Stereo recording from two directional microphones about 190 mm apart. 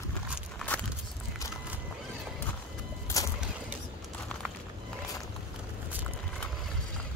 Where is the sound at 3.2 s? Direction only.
20° left (ahead or behind).